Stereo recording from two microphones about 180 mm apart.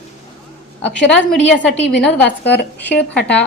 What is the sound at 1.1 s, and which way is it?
A woman's voice, 5° left (ahead or behind).